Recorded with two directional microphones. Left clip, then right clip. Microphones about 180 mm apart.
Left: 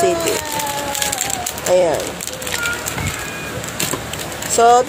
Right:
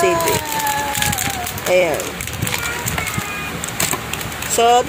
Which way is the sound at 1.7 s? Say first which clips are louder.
Left 1 dB; centre (ahead or behind).